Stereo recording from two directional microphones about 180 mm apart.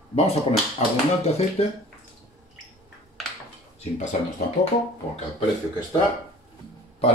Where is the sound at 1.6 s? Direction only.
35° left (ahead or behind).